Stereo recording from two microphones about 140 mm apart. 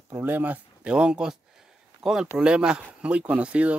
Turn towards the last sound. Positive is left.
turn(degrees=-10)  # may be behind; listen again after turning